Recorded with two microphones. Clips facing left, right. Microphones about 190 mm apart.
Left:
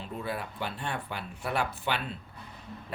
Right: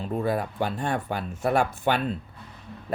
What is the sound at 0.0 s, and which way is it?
Speech, 45° right (ahead or behind).